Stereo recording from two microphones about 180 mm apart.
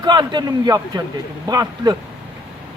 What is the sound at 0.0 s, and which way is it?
A man's voice, 25° right (ahead or behind).